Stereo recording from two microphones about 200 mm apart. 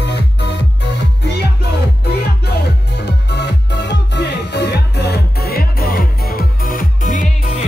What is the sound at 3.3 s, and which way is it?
Music, 60° left (ahead or behind).